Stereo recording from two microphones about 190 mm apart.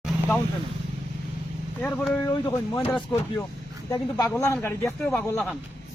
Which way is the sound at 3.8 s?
20° left (ahead or behind).